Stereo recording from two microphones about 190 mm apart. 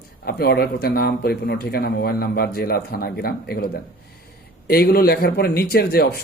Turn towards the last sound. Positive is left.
turn(degrees=55)  # may be behind; listen again after turning